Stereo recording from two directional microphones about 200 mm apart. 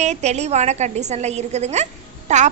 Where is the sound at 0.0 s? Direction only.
35° right (ahead or behind).